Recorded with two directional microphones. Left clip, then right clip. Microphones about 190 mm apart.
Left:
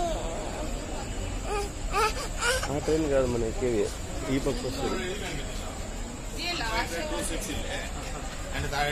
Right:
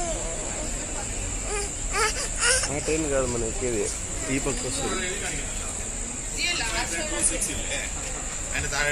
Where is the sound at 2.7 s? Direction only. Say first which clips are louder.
Even; 10° left (ahead or behind).